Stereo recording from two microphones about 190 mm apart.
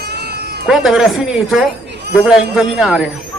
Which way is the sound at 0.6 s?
Centre (ahead or behind).